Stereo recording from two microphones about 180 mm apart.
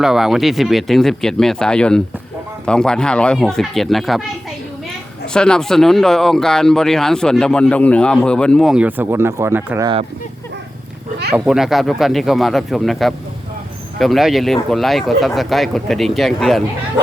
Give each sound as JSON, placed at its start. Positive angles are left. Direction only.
{"t": 0.0, "sound": "speech", "side_deg": 0}
{"t": 5.3, "sound": "speech", "side_deg": 5}
{"t": 9.8, "sound": "speech", "side_deg": -30}
{"t": 11.3, "sound": "speech", "side_deg": 0}